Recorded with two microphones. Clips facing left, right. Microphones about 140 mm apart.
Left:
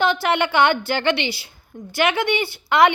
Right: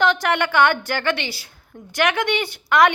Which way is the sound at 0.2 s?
10° left (ahead or behind).